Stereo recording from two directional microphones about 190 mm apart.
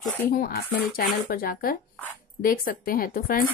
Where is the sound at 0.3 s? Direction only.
50° left (ahead or behind).